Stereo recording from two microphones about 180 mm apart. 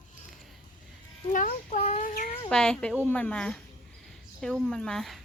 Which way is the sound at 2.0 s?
50° left (ahead or behind).